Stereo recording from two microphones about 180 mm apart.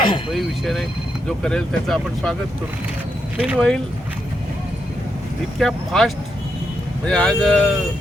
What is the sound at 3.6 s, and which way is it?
Speech, 5° left (ahead or behind).